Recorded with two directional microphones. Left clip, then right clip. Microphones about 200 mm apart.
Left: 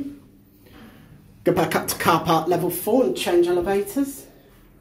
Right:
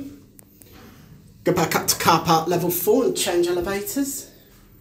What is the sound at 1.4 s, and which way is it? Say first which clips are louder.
Speech: even; 5° left (ahead or behind).